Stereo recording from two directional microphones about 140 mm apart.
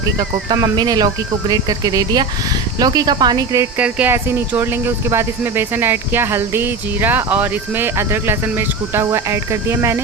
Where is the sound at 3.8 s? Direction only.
10° right (ahead or behind).